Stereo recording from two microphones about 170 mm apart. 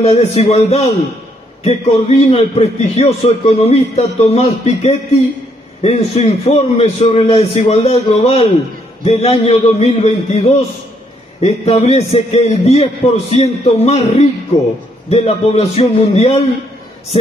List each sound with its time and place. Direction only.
0.0 s a man's voice: 40° left (ahead or behind)